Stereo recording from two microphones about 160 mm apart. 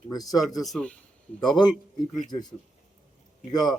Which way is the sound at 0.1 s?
25° left (ahead or behind).